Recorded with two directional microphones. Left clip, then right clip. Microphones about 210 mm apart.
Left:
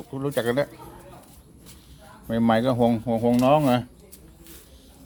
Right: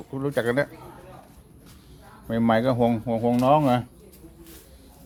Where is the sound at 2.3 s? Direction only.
Centre (ahead or behind).